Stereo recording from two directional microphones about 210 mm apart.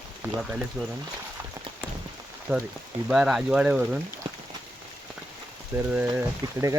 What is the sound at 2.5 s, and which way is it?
Speech, 10° right (ahead or behind).